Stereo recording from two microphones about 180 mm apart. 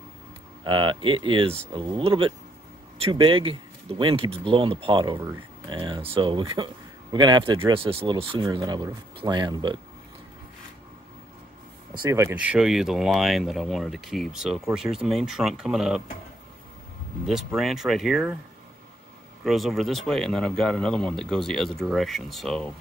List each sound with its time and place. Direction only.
0.7 s speech: 25° right (ahead or behind)
5.2 s speech: 15° right (ahead or behind)
5.8 s speech: 25° right (ahead or behind)
11.9 s speech: 20° right (ahead or behind); by 16.0 s centre (ahead or behind)
17.3 s speech: centre (ahead or behind)
19.4 s speech: centre (ahead or behind)